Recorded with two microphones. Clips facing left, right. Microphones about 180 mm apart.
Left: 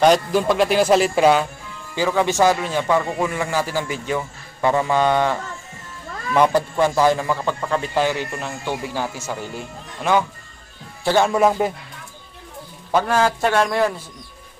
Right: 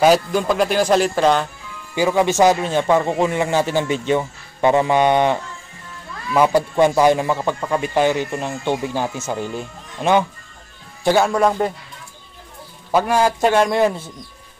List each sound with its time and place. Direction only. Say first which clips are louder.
0.0 s speech: right 1 dB; centre (ahead or behind)
2.0 s a man's voice: right 3 dB; 15° right (ahead or behind)
6.3 s speech: right 1 dB; 5° right (ahead or behind)
6.8 s a man's voice: right 4 dB; 20° right (ahead or behind)
11.2 s speech: even; 5° left (ahead or behind)
12.9 s speech: right 2 dB; 10° right (ahead or behind)